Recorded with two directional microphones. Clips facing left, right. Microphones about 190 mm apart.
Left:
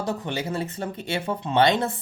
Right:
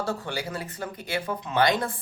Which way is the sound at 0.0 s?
20° left (ahead or behind).